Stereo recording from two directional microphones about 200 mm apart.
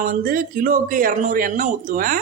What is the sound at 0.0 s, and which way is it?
A man's voice, 45° right (ahead or behind).